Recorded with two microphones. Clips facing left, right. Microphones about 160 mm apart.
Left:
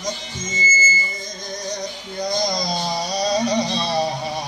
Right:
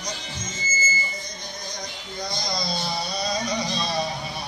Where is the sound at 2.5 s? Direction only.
40° left (ahead or behind).